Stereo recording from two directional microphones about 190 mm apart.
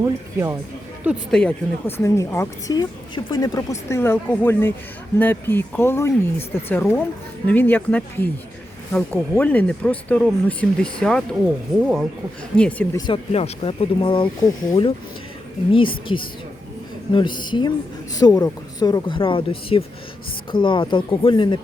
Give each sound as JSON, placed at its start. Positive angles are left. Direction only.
{"t": 0.0, "sound": "speech", "side_deg": -15}
{"t": 1.0, "sound": "speech", "side_deg": 5}
{"t": 12.5, "sound": "speech", "side_deg": 5}
{"t": 13.3, "sound": "speech", "side_deg": 30}